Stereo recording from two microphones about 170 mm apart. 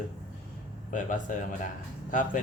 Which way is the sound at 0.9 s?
50° left (ahead or behind).